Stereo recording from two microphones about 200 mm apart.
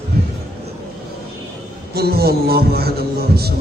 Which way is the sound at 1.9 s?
50° right (ahead or behind).